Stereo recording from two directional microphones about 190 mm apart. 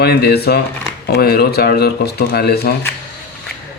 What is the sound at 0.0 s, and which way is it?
A man's voice, 60° left (ahead or behind).